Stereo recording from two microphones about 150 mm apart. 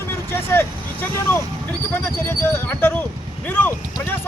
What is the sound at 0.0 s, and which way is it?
Vehicle, 15° left (ahead or behind).